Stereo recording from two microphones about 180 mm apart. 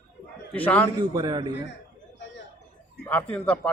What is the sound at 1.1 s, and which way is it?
Speech, 20° right (ahead or behind).